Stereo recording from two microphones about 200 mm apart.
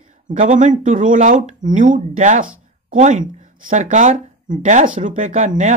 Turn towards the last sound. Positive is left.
turn(degrees=-35)  # may be behind; listen again after turning